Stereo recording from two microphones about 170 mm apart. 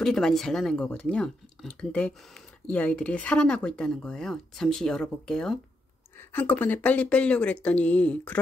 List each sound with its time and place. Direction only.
0.0 s speech: 5° left (ahead or behind)